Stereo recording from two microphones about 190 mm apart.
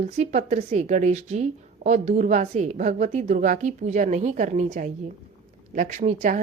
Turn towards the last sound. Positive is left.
turn(degrees=-40)  # may be behind; listen again after turning